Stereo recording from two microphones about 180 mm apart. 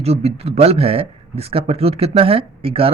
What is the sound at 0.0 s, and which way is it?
Speech, 35° right (ahead or behind).